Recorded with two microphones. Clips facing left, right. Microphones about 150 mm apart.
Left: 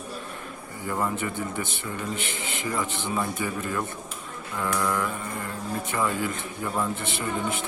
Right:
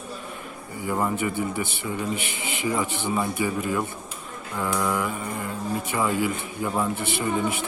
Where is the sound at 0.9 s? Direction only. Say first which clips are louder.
Right 3 dB; 10° right (ahead or behind).